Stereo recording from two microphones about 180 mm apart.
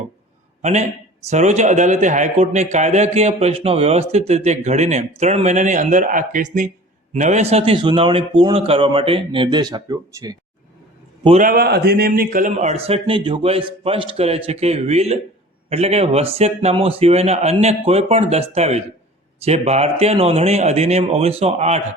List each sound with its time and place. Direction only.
0.6 s a man's voice: 40° right (ahead or behind); by 10.3 s 20° right (ahead or behind)
11.3 s a man's voice: 50° right (ahead or behind)